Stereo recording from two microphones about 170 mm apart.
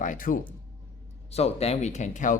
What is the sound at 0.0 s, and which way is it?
Speech, 55° left (ahead or behind).